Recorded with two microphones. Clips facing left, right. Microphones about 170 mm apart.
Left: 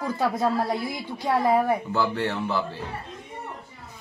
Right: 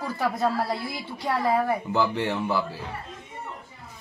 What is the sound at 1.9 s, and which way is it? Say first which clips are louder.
Speech: right 1 dB; 15° right (ahead or behind).